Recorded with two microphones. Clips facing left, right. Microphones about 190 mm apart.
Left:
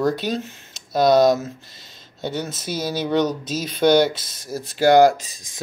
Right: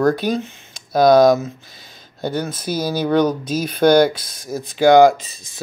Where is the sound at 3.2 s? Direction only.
55° right (ahead or behind).